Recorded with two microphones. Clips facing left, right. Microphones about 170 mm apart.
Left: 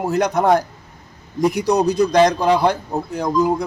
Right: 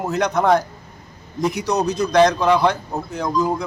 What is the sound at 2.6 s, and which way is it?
Speech, 10° left (ahead or behind).